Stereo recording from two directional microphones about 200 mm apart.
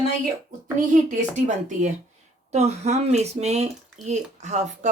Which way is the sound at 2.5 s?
35° right (ahead or behind).